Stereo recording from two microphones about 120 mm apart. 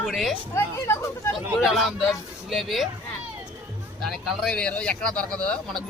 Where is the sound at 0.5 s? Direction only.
20° left (ahead or behind).